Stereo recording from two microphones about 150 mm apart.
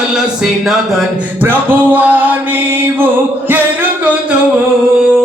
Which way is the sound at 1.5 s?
10° right (ahead or behind).